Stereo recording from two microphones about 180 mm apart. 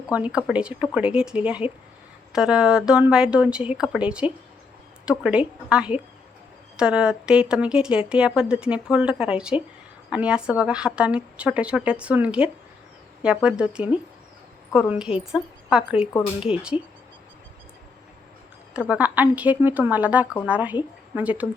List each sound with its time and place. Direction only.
0.1 s a woman's voice: 5° right (ahead or behind)
1.6 s speech: 30° left (ahead or behind)
2.3 s a woman's voice: 5° right (ahead or behind)
18.7 s a woman's voice: 10° right (ahead or behind)